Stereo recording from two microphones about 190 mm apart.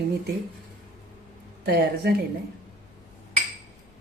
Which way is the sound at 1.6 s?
50° right (ahead or behind).